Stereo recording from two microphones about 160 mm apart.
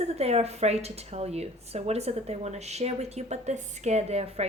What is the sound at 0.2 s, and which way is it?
Speech, 40° right (ahead or behind).